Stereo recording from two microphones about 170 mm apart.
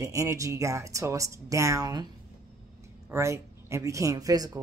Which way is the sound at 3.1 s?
15° right (ahead or behind).